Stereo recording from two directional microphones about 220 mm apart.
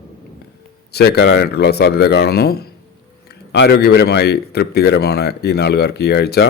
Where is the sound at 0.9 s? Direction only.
45° left (ahead or behind).